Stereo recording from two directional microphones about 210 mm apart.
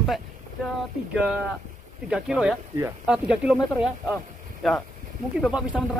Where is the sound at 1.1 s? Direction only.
5° right (ahead or behind).